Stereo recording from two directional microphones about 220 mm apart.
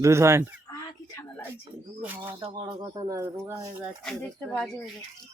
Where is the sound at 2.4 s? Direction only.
25° right (ahead or behind).